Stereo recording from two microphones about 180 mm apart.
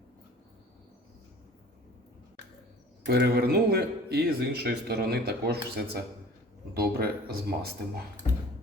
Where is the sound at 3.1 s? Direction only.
65° right (ahead or behind).